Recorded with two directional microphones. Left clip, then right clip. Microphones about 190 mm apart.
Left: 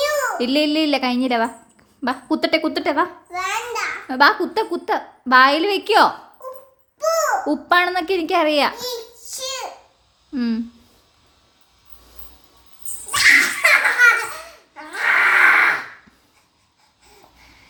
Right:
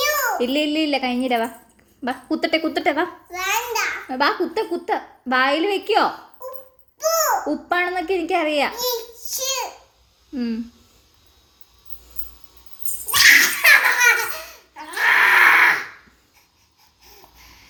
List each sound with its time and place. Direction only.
0.0 s a child's voice: 20° left (ahead or behind)
9.3 s babbling: 15° left (ahead or behind)
10.3 s speech: 30° left (ahead or behind)
13.1 s laughter: 10° left (ahead or behind)